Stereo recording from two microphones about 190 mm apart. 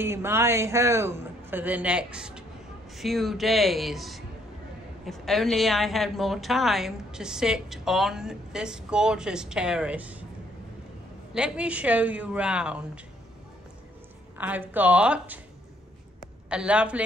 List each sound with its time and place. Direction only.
0.0 s a man's voice: 15° right (ahead or behind)
11.3 s a man's voice: 5° right (ahead or behind)
14.4 s a man's voice: 10° right (ahead or behind)
16.2 s a sound: 5° right (ahead or behind)